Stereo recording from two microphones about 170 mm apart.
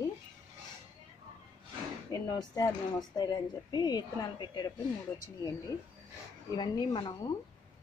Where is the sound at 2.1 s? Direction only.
20° left (ahead or behind).